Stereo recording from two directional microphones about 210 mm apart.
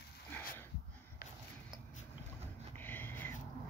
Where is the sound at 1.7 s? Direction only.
5° right (ahead or behind).